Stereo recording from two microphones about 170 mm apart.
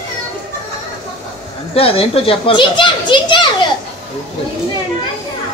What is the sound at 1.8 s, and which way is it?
Children playing, 35° left (ahead or behind).